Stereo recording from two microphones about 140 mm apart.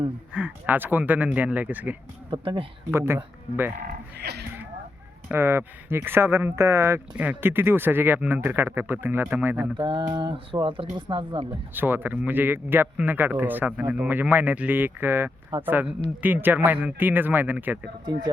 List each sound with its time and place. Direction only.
0.3 s speech: 10° right (ahead or behind)
2.3 s speech: 35° right (ahead or behind)
2.9 s speech: 20° right (ahead or behind)
5.3 s speech: 15° right (ahead or behind)
9.7 s speech: 35° right (ahead or behind)
11.7 s speech: 15° right (ahead or behind)